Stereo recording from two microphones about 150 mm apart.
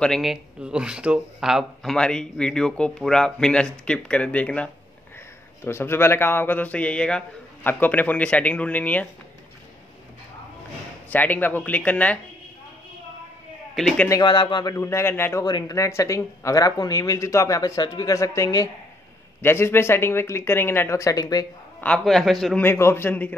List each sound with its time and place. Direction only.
0.0 s a man's voice: centre (ahead or behind)
11.1 s a man's voice: 10° left (ahead or behind)
13.7 s speech: centre (ahead or behind)
14.0 s a man's voice: 25° left (ahead or behind)
21.8 s speech: 5° left (ahead or behind)
22.6 s a man's voice: 15° left (ahead or behind)